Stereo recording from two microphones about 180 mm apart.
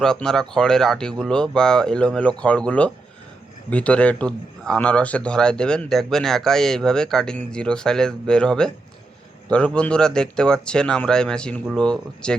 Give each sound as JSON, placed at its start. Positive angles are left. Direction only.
{"t": 0.0, "sound": "a man's voice", "side_deg": 5}